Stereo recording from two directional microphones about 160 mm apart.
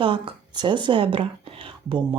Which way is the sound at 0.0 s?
35° right (ahead or behind).